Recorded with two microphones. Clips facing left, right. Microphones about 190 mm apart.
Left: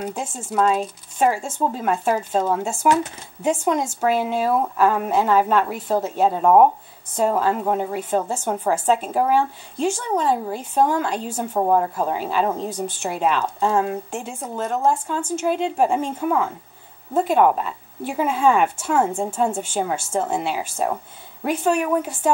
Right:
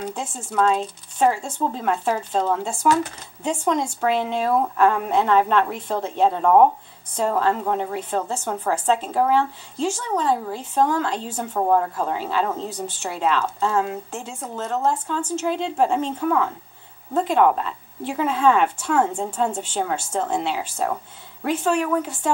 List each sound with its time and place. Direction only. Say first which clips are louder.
0.0 s speech: left 1 dB; 10° left (ahead or behind)